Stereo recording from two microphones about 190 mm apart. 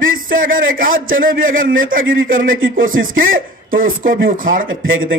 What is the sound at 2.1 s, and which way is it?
Speech, 90° right.